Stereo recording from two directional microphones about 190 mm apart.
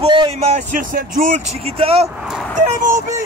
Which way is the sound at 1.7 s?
30° right (ahead or behind).